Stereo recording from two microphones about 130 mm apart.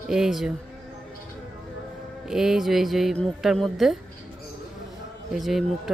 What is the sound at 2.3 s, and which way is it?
Speech, 5° right (ahead or behind).